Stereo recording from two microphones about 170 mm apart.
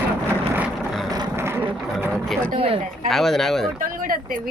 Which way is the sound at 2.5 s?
35° right (ahead or behind).